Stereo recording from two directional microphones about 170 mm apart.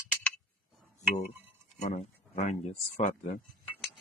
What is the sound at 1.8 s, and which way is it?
Speech, 40° left (ahead or behind).